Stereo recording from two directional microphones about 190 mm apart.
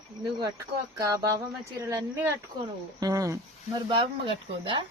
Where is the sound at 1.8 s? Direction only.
15° right (ahead or behind).